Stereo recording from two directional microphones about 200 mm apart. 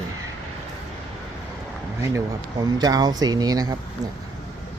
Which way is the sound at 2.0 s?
15° right (ahead or behind).